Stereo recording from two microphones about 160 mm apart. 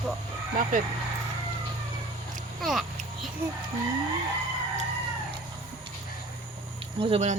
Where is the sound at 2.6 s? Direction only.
Centre (ahead or behind).